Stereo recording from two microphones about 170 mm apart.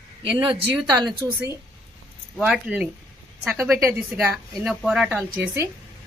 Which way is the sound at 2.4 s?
5° right (ahead or behind).